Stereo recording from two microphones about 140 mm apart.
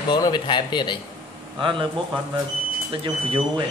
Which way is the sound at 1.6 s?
35° right (ahead or behind).